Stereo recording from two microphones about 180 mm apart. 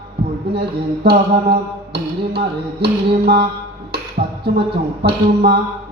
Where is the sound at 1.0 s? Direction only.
65° right (ahead or behind).